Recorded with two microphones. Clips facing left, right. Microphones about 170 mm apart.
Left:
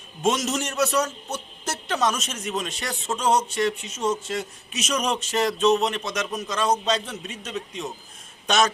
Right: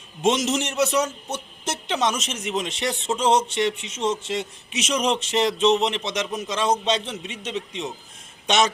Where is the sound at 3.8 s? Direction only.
85° right.